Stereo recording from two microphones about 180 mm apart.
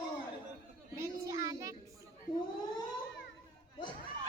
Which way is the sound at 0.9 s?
15° right (ahead or behind).